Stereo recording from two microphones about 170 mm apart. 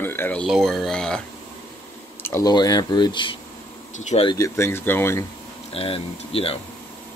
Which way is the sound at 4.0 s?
40° left (ahead or behind).